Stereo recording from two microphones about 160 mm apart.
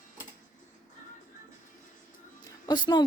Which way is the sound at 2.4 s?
25° left (ahead or behind).